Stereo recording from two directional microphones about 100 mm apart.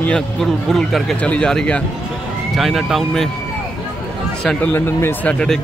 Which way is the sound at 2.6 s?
5° right (ahead or behind).